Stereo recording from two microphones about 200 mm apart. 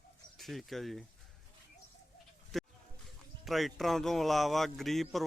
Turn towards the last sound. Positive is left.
turn(degrees=0)  # may be behind; listen again after turning